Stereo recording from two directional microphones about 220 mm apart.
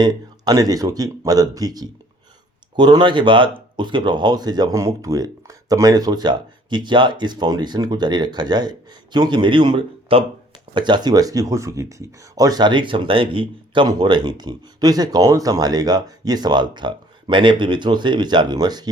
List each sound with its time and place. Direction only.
0.0 s speech: 15° right (ahead or behind)